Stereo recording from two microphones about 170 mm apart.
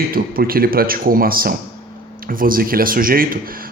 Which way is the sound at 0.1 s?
60° right (ahead or behind).